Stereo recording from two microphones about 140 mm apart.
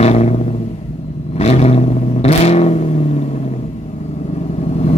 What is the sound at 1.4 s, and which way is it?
Vehicle, 50° left (ahead or behind).